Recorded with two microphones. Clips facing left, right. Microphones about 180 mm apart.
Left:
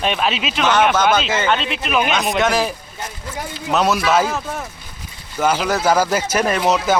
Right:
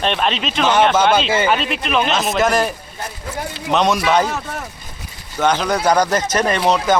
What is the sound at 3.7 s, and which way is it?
Speech, 5° left (ahead or behind).